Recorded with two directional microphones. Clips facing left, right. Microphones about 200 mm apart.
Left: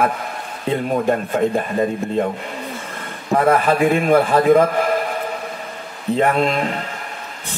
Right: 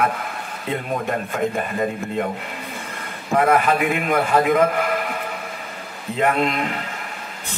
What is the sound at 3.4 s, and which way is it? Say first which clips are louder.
Speech: left 3 dB; 35° left (ahead or behind).